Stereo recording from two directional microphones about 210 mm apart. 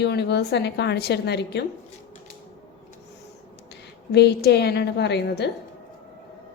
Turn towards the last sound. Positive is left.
turn(degrees=55)  # may be behind; listen again after turning